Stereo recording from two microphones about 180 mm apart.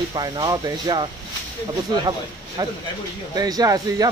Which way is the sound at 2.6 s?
20° right (ahead or behind).